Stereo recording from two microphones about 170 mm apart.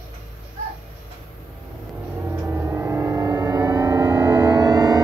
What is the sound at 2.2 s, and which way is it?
Gong, 15° right (ahead or behind).